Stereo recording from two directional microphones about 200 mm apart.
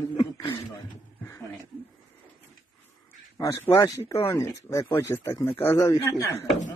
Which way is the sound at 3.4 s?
15° left (ahead or behind).